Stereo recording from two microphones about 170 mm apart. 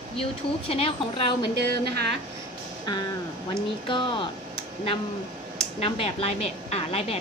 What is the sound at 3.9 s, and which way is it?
Speech, 30° left (ahead or behind).